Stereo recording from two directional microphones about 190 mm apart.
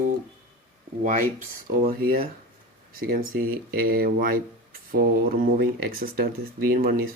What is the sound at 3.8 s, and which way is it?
Speech, 50° right (ahead or behind).